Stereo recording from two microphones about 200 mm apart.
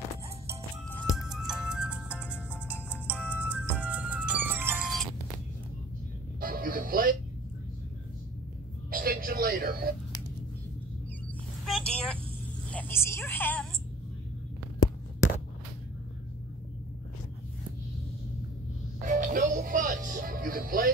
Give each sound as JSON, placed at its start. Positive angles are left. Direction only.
{"t": 0.8, "sound": "music", "side_deg": 5}
{"t": 3.2, "sound": "music", "side_deg": 10}
{"t": 3.7, "sound": "music", "side_deg": -5}
{"t": 6.4, "sound": "music", "side_deg": -45}
{"t": 8.9, "sound": "a sound", "side_deg": -45}
{"t": 11.6, "sound": "vehicle", "side_deg": 0}
{"t": 12.7, "sound": "a sound", "side_deg": 10}
{"t": 19.0, "sound": "music", "side_deg": -40}